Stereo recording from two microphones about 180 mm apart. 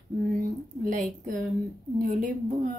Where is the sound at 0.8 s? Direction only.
45° right (ahead or behind).